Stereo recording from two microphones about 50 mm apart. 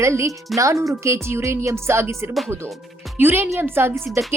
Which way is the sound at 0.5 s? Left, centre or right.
Right.